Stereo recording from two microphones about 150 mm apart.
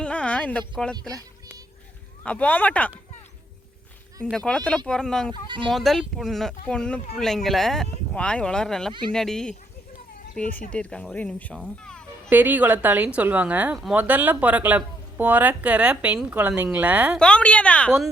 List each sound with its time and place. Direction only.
0.0 s a sound: 10° left (ahead or behind)
1.1 s a sound: 25° right (ahead or behind)
2.2 s speech: 10° left (ahead or behind)
4.2 s speech: 5° left (ahead or behind)
5.3 s speech: 35° right (ahead or behind)
5.7 s speech: centre (ahead or behind)
8.9 s speech: 30° right (ahead or behind)
9.1 s speech: 5° left (ahead or behind)
11.8 s music: 5° left (ahead or behind)
12.3 s speech: 10° right (ahead or behind)
17.2 s speech: 5° left (ahead or behind)